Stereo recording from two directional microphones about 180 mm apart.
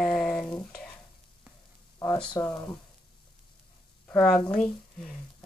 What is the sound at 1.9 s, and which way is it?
Speech, 20° left (ahead or behind).